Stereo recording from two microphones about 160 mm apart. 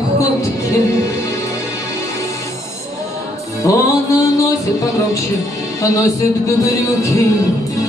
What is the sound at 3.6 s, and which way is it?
Music, 20° left (ahead or behind).